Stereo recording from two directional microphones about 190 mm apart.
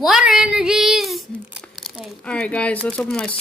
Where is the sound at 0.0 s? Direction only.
5° right (ahead or behind).